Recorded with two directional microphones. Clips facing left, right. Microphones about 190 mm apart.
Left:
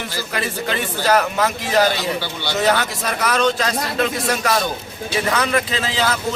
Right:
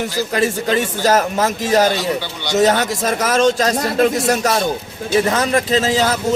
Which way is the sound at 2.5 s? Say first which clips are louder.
Right 5 dB; 45° right (ahead or behind).